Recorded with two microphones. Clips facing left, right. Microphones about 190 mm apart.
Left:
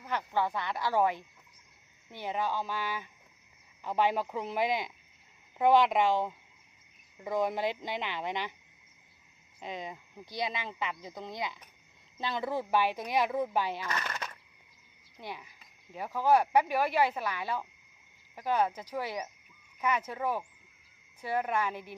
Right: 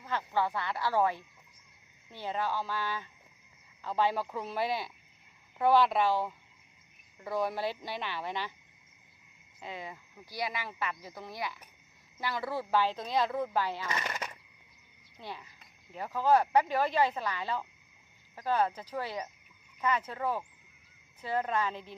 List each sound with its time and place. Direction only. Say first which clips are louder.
0.0 s speech: even; 15° left (ahead or behind)
9.6 s speech: left 2 dB; 20° left (ahead or behind)
13.8 s a sound: even; 15° right (ahead or behind)
15.1 s speech: left 1 dB; 15° left (ahead or behind)